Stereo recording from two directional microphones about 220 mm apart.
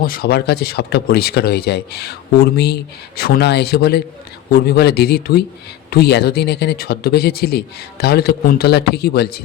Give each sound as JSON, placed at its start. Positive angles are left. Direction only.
{"t": 0.0, "sound": "speech", "side_deg": 40}